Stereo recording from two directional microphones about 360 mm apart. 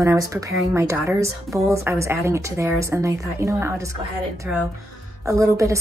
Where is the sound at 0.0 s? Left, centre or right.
Centre.